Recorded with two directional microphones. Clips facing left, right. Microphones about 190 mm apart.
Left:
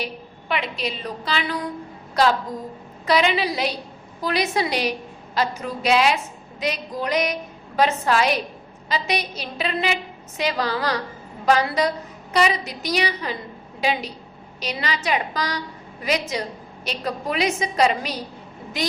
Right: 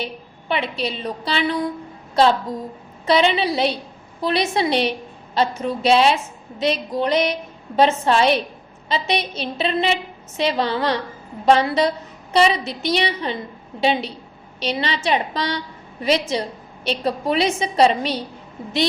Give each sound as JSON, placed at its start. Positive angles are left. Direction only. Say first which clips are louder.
{"t": 0.0, "sound": "a woman's voice", "louder": "right 1 dB", "side_deg": -30}
{"t": 3.1, "sound": "a woman's voice", "louder": "right 3 dB", "side_deg": -25}